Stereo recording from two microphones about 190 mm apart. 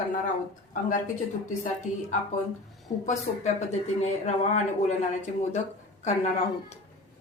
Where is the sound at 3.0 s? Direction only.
35° left (ahead or behind).